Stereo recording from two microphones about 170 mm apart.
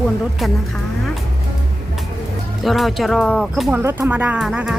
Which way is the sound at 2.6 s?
Centre (ahead or behind).